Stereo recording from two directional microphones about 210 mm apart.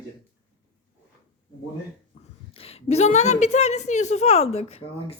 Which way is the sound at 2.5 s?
30° left (ahead or behind).